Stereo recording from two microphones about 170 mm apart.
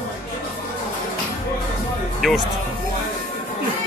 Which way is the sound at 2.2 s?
Centre (ahead or behind).